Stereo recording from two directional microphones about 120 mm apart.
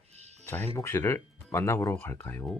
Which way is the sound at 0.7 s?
25° left (ahead or behind).